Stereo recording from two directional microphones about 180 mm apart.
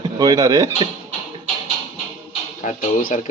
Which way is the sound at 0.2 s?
20° right (ahead or behind).